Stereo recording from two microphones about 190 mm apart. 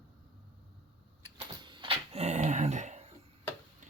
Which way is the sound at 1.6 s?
25° right (ahead or behind).